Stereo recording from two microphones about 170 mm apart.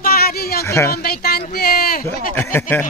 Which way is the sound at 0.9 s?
70° left (ahead or behind).